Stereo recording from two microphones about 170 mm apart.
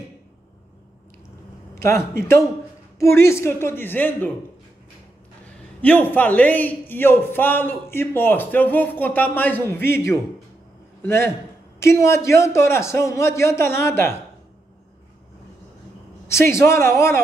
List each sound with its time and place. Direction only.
1.8 s a man's voice: 15° left (ahead or behind)
5.8 s a man's voice: 10° left (ahead or behind)
16.3 s a man's voice: 15° left (ahead or behind)